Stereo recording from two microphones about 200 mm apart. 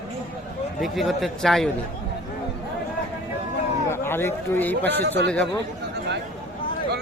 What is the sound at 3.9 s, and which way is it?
A man's voice, 10° left (ahead or behind).